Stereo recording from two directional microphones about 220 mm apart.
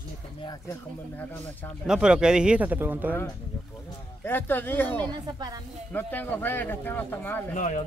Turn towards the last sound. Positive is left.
turn(degrees=35)  # may be behind; listen again after turning